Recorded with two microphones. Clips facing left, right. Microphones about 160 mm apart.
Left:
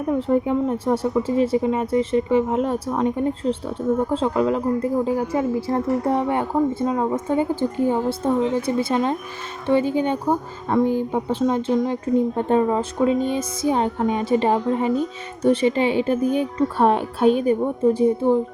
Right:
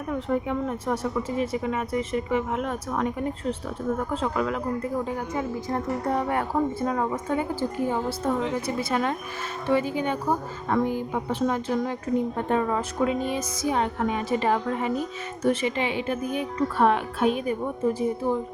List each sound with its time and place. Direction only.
0.1 s speech: 30° left (ahead or behind)